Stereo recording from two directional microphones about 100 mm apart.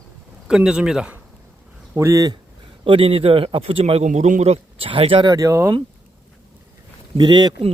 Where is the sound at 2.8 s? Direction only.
65° right (ahead or behind).